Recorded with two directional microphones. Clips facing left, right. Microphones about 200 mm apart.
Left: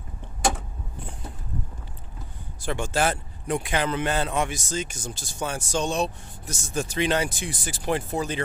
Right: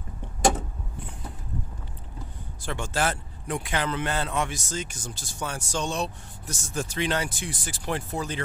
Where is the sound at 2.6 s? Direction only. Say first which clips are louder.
Left 3 dB; 15° left (ahead or behind).